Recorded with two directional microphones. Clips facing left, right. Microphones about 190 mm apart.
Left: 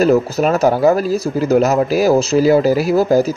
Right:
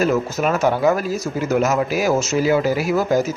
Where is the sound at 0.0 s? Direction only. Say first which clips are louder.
Left 6 dB; 35° left (ahead or behind).